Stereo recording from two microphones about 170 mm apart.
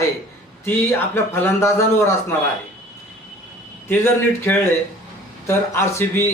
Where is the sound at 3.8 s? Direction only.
15° left (ahead or behind).